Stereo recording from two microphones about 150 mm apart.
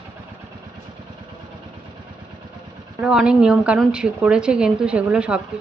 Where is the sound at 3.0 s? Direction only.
5° right (ahead or behind).